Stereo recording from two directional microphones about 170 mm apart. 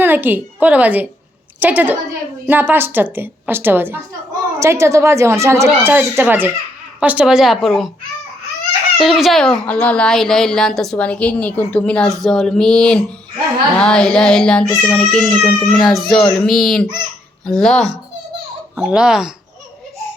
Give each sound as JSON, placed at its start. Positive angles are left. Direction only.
{"t": 0.0, "sound": "a woman's voice", "side_deg": -10}
{"t": 9.0, "sound": "speech", "side_deg": 0}